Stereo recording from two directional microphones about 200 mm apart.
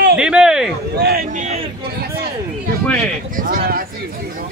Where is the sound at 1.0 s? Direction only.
50° right (ahead or behind).